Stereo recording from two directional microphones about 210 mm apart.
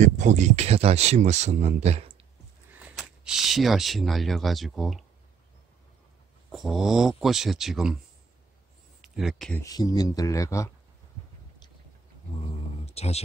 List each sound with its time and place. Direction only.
0.0 s speech: 35° right (ahead or behind)
2.8 s speech: centre (ahead or behind)
6.5 s speech: centre (ahead or behind)
9.0 s speech: centre (ahead or behind)
9.6 s speech: 15° left (ahead or behind)
12.8 s speech: 30° left (ahead or behind)